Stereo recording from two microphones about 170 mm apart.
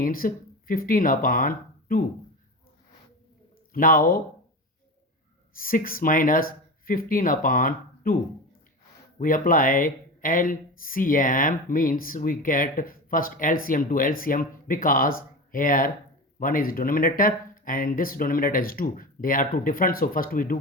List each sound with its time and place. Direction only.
0.0 s speech: 55° left (ahead or behind)
3.7 s speech: 55° left (ahead or behind)
5.5 s speech: 55° left (ahead or behind)